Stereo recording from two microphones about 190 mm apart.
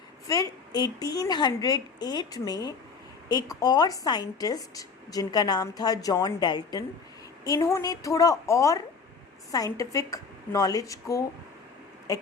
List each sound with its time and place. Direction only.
0.3 s a woman's voice: 20° left (ahead or behind)